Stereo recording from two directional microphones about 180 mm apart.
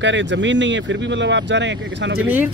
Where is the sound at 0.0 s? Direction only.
90° right.